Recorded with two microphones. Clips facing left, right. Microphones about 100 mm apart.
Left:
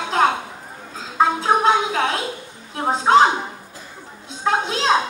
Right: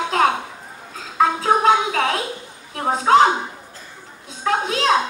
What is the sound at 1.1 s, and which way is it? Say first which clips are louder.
Music: even; 25° left (ahead or behind).